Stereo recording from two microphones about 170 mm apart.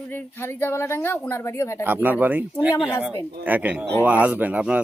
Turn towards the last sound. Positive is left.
turn(degrees=-10)  # may be behind; listen again after turning